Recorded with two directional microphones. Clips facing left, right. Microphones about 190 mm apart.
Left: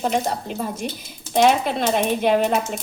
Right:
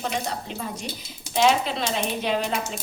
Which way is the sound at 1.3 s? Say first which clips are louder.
Left 4 dB; 50° left (ahead or behind).